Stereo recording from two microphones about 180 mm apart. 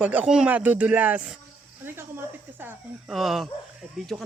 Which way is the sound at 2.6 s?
Centre (ahead or behind).